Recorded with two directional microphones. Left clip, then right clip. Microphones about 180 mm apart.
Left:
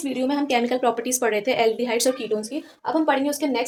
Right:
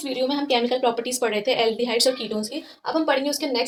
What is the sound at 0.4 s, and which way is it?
A woman's voice, 45° left (ahead or behind).